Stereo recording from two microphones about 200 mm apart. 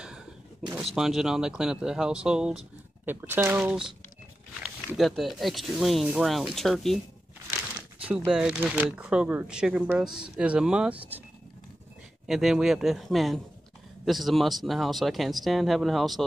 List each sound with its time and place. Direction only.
0.0 s a sound: 5° right (ahead or behind)
0.9 s speech: centre (ahead or behind)
8.0 s speech: 5° right (ahead or behind)
12.3 s speech: centre (ahead or behind)